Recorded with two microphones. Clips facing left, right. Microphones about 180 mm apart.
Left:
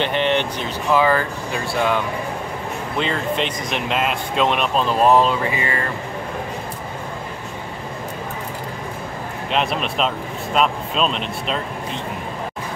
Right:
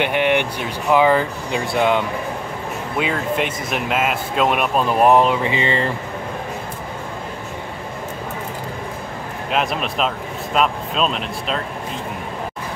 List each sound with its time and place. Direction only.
0.0 s speech: 10° right (ahead or behind)
3.0 s speech: 10° right (ahead or behind); by 5.9 s 25° right (ahead or behind)
9.5 s speech: centre (ahead or behind)